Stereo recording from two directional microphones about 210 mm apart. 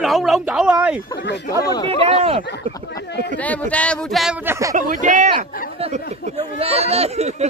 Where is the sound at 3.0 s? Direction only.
55° left (ahead or behind).